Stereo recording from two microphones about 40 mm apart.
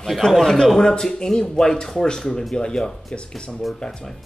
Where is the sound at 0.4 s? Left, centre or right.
Centre.